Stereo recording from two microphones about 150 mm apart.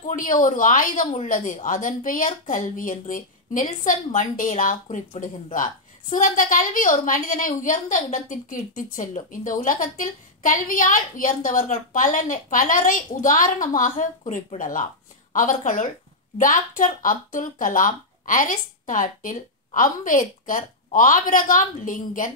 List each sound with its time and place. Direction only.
0.0 s a woman's voice: 60° left (ahead or behind)